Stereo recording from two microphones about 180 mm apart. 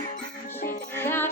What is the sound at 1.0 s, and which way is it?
Music, 15° left (ahead or behind).